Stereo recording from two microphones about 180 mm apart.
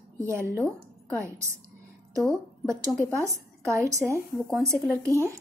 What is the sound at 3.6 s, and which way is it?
Speech, 15° right (ahead or behind).